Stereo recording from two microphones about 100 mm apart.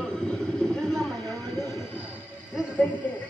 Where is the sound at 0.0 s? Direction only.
10° left (ahead or behind).